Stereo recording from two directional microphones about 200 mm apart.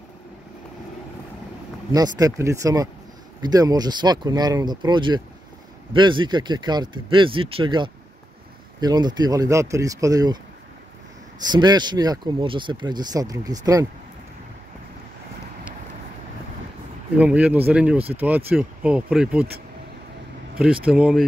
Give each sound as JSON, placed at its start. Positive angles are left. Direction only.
{"t": 1.9, "sound": "speech", "side_deg": -20}
{"t": 11.4, "sound": "speech", "side_deg": -20}
{"t": 17.2, "sound": "speech", "side_deg": -5}
{"t": 20.5, "sound": "speech", "side_deg": -5}